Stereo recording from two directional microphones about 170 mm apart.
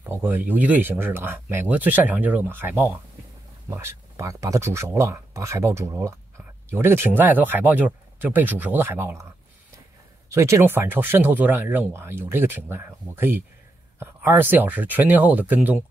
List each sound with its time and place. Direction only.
0.0 s speech: 10° right (ahead or behind)
10.3 s speech: 15° right (ahead or behind)